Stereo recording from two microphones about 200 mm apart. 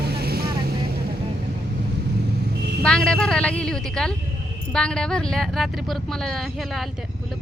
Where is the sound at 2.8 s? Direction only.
5° left (ahead or behind).